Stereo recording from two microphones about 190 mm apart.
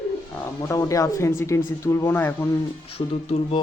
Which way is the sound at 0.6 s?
20° left (ahead or behind).